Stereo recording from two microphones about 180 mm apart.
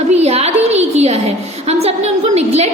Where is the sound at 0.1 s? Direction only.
35° right (ahead or behind).